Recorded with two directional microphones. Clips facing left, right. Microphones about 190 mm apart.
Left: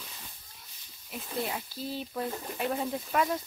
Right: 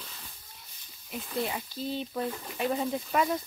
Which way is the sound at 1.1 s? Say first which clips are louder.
Right 2 dB; centre (ahead or behind).